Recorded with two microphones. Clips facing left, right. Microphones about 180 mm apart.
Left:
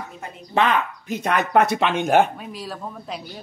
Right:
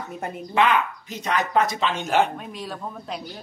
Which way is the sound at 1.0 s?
55° left (ahead or behind).